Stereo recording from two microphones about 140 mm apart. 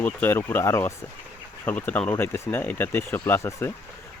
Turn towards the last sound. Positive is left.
turn(degrees=20)  # may be behind; listen again after turning